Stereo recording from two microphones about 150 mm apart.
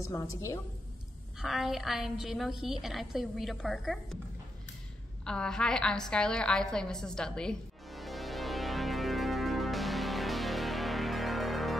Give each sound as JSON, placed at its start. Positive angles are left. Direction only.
{"t": 0.0, "sound": "a woman's voice", "side_deg": 20}
{"t": 1.4, "sound": "a woman's voice", "side_deg": 0}
{"t": 5.2, "sound": "a sound", "side_deg": 5}